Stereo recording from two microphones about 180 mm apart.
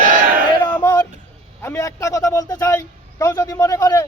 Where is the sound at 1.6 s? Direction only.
15° left (ahead or behind).